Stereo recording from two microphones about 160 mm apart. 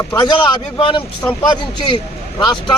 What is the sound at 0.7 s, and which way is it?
A man's voice, 30° left (ahead or behind).